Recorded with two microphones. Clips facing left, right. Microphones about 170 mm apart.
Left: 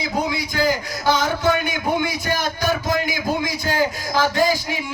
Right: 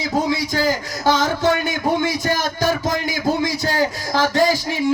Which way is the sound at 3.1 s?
40° right (ahead or behind).